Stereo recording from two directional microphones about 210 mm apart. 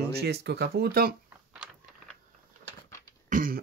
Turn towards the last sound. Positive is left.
turn(degrees=-40)  # may be behind; listen again after turning